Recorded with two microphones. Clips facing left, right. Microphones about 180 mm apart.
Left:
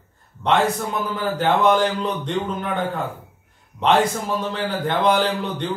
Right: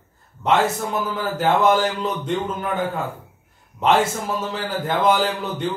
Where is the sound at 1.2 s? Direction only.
5° right (ahead or behind).